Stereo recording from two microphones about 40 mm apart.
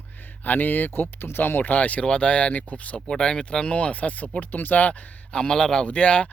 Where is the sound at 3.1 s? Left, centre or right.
Centre.